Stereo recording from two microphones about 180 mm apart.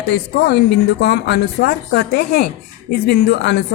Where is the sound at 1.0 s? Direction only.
70° left (ahead or behind).